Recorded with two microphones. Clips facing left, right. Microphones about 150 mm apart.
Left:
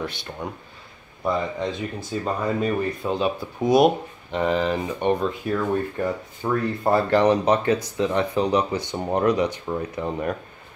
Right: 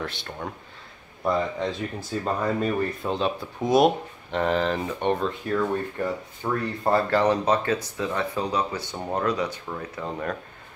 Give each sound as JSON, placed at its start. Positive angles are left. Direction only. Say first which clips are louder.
{"t": 0.4, "sound": "speech", "louder": "left 2 dB", "side_deg": 0}